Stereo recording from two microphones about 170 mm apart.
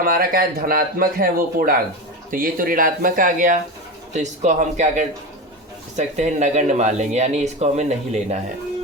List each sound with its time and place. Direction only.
0.0 s a man's voice: 60° right (ahead or behind); by 8.4 s 40° right (ahead or behind)